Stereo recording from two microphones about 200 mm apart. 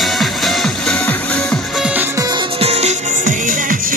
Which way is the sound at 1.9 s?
15° right (ahead or behind).